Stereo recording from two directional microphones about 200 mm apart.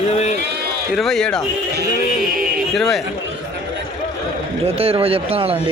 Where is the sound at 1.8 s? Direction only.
45° right (ahead or behind).